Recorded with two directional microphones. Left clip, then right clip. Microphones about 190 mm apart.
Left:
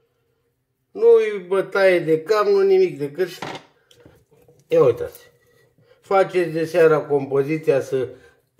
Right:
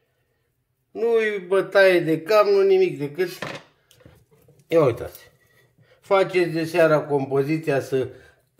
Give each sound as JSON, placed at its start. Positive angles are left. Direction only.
{"t": 0.9, "sound": "a man's voice", "side_deg": -35}
{"t": 4.7, "sound": "a man's voice", "side_deg": -40}